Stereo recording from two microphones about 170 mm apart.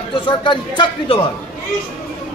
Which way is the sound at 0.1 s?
30° left (ahead or behind).